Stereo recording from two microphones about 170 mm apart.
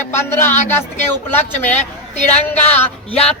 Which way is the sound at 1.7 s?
40° left (ahead or behind).